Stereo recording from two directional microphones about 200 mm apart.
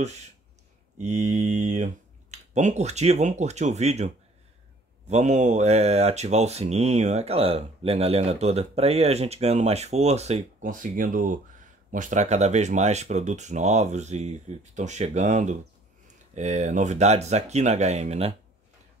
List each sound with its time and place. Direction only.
1.0 s speech: 35° right (ahead or behind)